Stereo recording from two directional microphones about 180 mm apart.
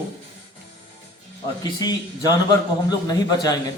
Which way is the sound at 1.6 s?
20° left (ahead or behind).